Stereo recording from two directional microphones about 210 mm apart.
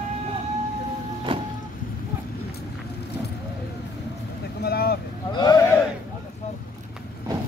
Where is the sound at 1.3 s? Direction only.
25° right (ahead or behind).